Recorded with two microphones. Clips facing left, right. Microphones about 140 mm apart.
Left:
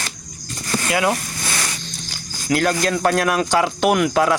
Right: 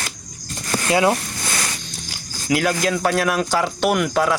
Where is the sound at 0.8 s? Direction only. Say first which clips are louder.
Right 3 dB; 25° right (ahead or behind).